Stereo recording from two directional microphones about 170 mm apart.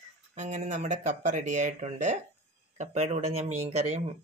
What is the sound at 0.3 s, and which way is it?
Speech, 45° right (ahead or behind).